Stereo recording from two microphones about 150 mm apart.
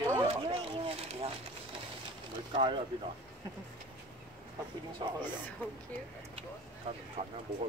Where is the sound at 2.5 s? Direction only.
30° right (ahead or behind).